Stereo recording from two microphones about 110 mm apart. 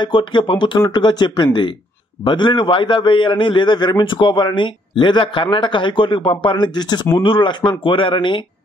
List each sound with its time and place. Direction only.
0.0 s a man's voice: 45° left (ahead or behind)